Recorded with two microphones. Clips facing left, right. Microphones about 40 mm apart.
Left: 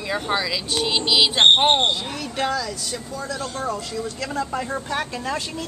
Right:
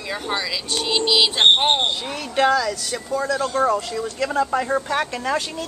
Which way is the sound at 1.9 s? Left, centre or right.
Right.